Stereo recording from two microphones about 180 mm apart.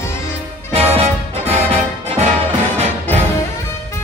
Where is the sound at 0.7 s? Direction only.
35° right (ahead or behind).